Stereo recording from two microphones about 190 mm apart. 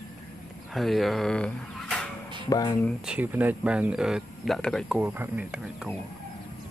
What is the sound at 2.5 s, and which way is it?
Speech, 25° left (ahead or behind).